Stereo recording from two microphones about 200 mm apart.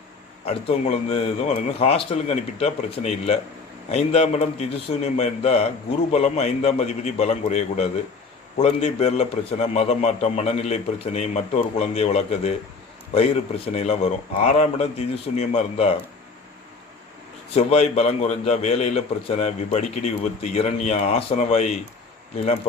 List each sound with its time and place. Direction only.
0.4 s a man's voice: 30° left (ahead or behind)
13.7 s a man's voice: 30° left (ahead or behind)
17.5 s a man's voice: 30° left (ahead or behind)